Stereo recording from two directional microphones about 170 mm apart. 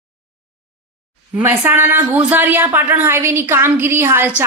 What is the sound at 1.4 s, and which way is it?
A woman's voice, 10° right (ahead or behind).